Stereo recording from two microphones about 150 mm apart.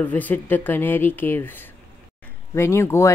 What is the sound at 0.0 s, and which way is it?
Speech, 10° left (ahead or behind).